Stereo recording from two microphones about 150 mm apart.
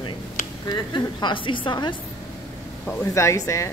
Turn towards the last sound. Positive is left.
turn(degrees=20)  # may be behind; listen again after turning